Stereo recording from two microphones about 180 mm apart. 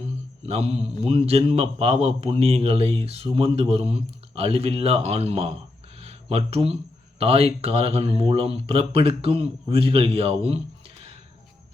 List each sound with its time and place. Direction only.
0.4 s a man's voice: 35° right (ahead or behind)
6.0 s a sound: 35° right (ahead or behind)
7.2 s a man's voice: 35° right (ahead or behind)